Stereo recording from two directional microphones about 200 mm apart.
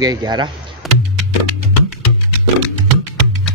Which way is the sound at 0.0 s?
20° right (ahead or behind).